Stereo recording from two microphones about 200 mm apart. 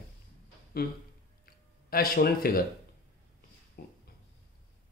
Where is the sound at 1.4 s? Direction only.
45° left (ahead or behind).